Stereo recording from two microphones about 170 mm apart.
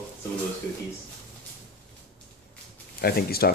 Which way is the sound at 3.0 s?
65° left (ahead or behind).